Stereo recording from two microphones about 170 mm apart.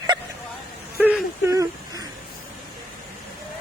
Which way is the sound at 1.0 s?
10° right (ahead or behind).